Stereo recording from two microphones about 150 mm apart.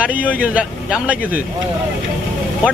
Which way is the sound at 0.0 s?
10° right (ahead or behind).